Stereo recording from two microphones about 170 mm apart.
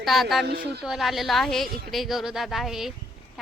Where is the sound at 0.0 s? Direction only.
Centre (ahead or behind).